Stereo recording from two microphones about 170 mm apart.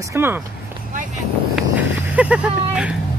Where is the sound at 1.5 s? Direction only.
5° right (ahead or behind).